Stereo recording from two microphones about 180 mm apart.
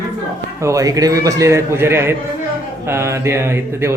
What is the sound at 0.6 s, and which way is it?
A man's voice, 20° right (ahead or behind).